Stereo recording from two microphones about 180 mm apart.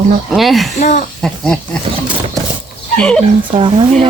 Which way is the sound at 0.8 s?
45° left (ahead or behind).